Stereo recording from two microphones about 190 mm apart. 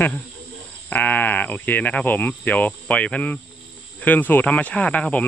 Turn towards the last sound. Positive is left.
turn(degrees=5)  # may be behind; listen again after turning